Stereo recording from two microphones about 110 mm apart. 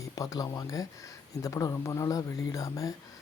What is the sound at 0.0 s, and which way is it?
Speech, 30° left (ahead or behind).